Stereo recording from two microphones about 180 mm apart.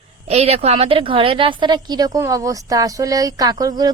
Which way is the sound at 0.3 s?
35° right (ahead or behind).